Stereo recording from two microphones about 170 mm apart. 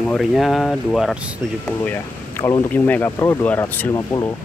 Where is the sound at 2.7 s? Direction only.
10° left (ahead or behind).